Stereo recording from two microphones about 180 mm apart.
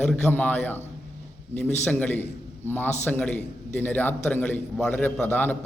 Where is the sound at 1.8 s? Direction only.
10° left (ahead or behind).